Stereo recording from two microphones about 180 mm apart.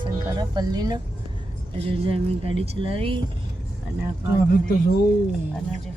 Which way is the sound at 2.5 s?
30° right (ahead or behind).